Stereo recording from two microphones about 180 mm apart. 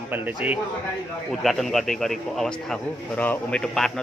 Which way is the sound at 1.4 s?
Centre (ahead or behind).